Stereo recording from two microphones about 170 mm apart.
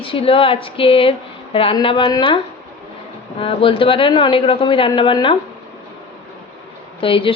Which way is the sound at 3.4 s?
30° left (ahead or behind).